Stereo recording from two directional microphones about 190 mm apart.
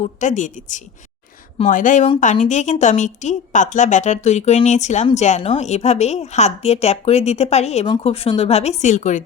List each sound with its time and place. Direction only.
0.0 s a woman's voice: 40° left (ahead or behind)